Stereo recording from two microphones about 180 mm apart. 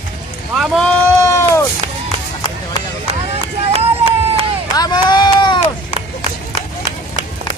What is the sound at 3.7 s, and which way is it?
Run, 35° right (ahead or behind).